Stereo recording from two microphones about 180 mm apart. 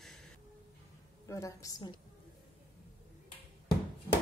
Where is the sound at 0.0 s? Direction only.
Centre (ahead or behind).